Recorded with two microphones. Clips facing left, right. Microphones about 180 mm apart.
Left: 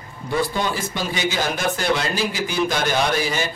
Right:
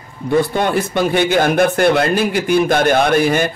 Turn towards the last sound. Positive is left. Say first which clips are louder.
# right 8 dB
turn(degrees=-55)  # may be behind; listen again after turning